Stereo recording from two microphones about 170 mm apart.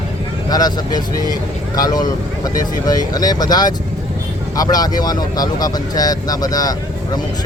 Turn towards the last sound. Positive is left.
turn(degrees=20)  # may be behind; listen again after turning